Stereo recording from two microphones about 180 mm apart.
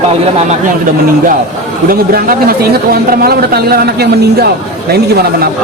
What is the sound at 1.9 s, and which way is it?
Speech, 55° right (ahead or behind).